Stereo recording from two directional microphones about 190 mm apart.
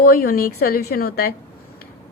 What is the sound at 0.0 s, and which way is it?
A woman's voice, 50° left (ahead or behind).